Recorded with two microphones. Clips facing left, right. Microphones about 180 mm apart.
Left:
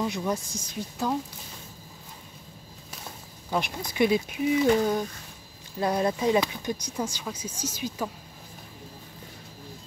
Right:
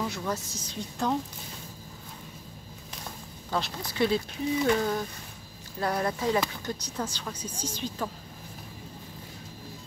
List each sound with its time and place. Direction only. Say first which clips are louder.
0.0 s speech: left 3 dB; 15° left (ahead or behind)
3.4 s speech: left 2 dB; 15° left (ahead or behind)